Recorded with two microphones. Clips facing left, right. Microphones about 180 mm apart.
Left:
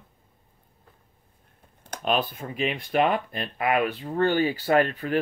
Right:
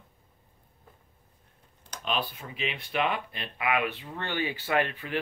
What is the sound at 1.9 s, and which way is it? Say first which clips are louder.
Speech: left 6 dB; 50° left (ahead or behind).